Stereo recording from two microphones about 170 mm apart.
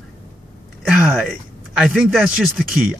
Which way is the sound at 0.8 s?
Centre (ahead or behind).